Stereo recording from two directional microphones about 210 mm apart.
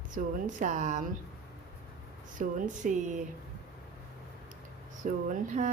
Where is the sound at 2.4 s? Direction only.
35° right (ahead or behind).